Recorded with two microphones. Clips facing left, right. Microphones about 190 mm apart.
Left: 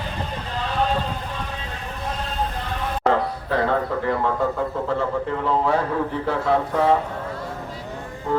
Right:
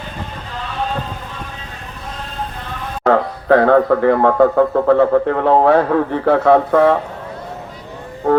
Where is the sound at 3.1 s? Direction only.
60° right (ahead or behind).